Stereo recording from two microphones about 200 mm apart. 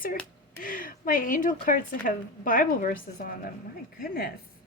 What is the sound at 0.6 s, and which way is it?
A woman's voice, 45° left (ahead or behind).